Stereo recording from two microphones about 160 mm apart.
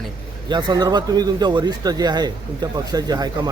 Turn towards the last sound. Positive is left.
turn(degrees=-25)  # may be behind; listen again after turning